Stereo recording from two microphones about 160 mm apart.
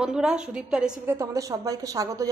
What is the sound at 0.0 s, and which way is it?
A woman's voice, 5° right (ahead or behind).